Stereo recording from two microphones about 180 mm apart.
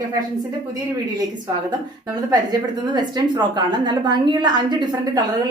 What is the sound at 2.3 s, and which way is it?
A woman's voice, 25° right (ahead or behind).